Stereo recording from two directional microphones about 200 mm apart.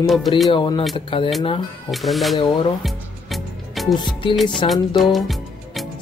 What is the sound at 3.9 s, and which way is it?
Speech, 20° left (ahead or behind).